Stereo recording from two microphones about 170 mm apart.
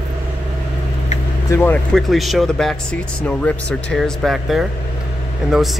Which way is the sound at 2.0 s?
Centre (ahead or behind).